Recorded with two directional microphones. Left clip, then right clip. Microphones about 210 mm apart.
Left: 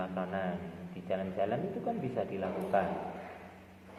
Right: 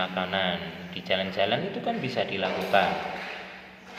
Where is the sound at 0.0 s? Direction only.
20° right (ahead or behind).